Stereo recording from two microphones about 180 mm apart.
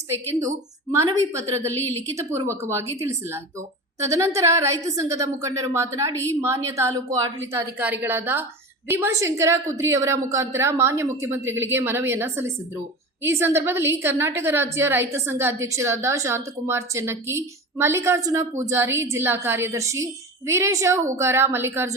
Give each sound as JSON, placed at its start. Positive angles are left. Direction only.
{"t": 0.3, "sound": "a woman's voice", "side_deg": -15}
{"t": 1.7, "sound": "a woman's voice", "side_deg": 10}
{"t": 2.1, "sound": "a woman's voice", "side_deg": -15}